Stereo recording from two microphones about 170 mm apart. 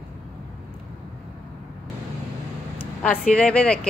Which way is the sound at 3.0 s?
5° left (ahead or behind).